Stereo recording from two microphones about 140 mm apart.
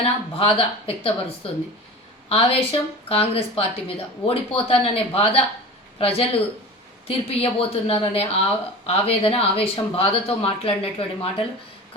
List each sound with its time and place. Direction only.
0.0 s speech: 40° left (ahead or behind)
2.3 s a woman's voice: 45° left (ahead or behind)